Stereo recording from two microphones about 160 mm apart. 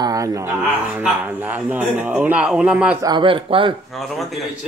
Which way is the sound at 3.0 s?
30° right (ahead or behind).